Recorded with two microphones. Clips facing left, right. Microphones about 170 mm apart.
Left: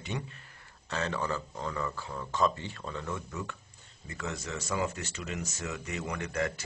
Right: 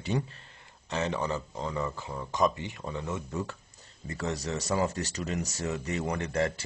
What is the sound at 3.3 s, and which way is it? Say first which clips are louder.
Speech: right 5 dB; 35° right (ahead or behind).